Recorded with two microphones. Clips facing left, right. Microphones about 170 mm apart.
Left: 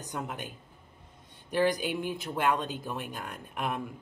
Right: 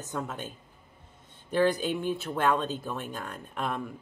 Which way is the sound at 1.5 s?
10° left (ahead or behind).